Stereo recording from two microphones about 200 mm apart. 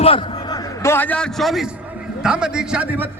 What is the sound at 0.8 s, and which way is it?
A man's voice, 10° left (ahead or behind).